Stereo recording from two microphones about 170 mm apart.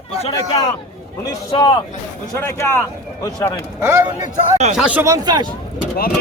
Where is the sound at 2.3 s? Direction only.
15° left (ahead or behind).